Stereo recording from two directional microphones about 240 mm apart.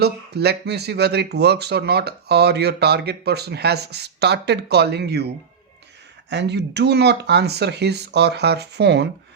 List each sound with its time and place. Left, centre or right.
0.0 s speech: right
6.3 s speech: right